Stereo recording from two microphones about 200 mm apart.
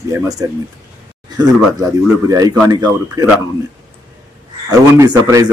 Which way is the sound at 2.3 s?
15° right (ahead or behind).